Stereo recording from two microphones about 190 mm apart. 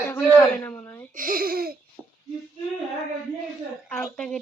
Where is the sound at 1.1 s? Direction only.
45° right (ahead or behind).